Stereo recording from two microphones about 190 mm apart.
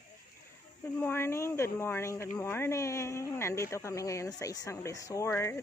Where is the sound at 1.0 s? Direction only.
10° left (ahead or behind).